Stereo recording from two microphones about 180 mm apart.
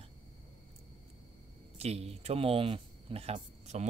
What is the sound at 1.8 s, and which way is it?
Speech, 35° right (ahead or behind).